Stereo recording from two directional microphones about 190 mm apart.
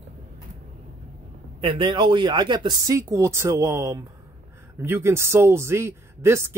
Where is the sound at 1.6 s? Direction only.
25° right (ahead or behind).